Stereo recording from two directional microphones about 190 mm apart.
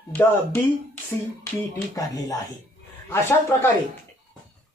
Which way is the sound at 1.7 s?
20° left (ahead or behind).